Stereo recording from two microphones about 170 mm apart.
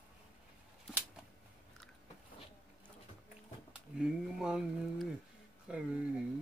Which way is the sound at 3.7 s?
5° right (ahead or behind).